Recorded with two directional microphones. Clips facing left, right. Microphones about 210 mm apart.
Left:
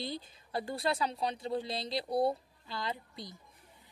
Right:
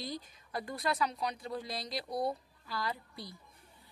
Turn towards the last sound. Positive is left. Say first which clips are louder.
# left 1 dB
turn(degrees=20)  # may be behind; listen again after turning